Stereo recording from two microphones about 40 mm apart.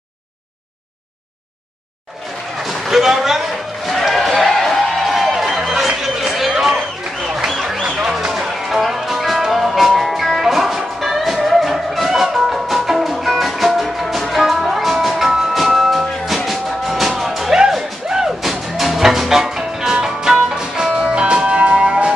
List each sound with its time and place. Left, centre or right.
2.6 s a sound: centre
4.4 s music: centre
8.1 s music: centre
18.4 s music: centre; by 22.1 s right